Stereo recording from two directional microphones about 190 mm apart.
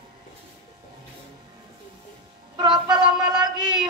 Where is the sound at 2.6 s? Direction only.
25° right (ahead or behind).